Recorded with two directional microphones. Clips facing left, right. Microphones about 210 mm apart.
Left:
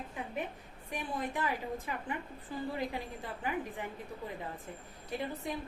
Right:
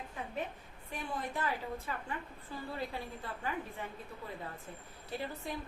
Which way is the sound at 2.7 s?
15° left (ahead or behind).